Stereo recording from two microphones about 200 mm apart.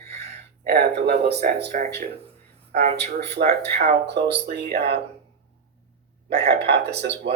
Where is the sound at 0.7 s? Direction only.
55° right (ahead or behind).